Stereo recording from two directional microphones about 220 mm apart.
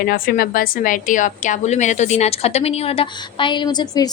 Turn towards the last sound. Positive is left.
turn(degrees=20)  # may be behind; listen again after turning